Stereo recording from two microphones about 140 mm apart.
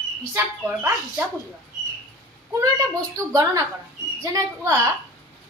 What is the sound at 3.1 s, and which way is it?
A woman's voice, 25° right (ahead or behind).